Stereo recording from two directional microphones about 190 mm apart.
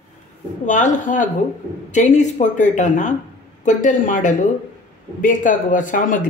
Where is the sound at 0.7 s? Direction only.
40° left (ahead or behind).